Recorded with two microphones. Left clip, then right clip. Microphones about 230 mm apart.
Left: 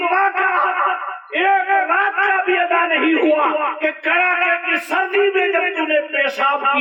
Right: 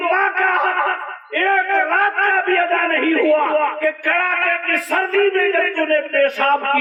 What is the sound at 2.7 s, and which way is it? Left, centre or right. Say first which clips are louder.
A man's voice: left 1 dB; right.